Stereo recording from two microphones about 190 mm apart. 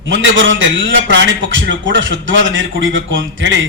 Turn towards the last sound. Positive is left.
turn(degrees=-75)  # may be behind; listen again after turning